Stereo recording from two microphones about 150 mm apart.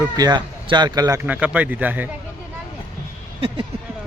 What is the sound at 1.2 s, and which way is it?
Speech, 10° right (ahead or behind).